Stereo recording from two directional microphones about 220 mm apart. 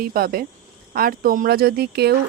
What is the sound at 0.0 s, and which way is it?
Speech, 40° right (ahead or behind).